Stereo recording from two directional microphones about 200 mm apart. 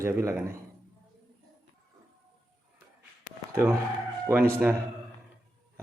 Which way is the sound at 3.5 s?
10° right (ahead or behind).